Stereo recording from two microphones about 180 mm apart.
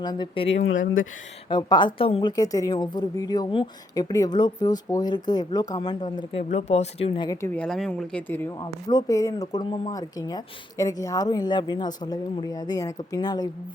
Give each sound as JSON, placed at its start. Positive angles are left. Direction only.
{"t": 0.0, "sound": "a woman's voice", "side_deg": 25}
{"t": 0.6, "sound": "speech", "side_deg": 90}
{"t": 1.5, "sound": "a woman's voice", "side_deg": 25}
{"t": 6.5, "sound": "speech", "side_deg": 40}
{"t": 7.4, "sound": "a woman's voice", "side_deg": 5}